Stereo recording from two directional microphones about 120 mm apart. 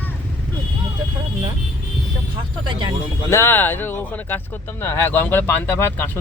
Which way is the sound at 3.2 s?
20° left (ahead or behind).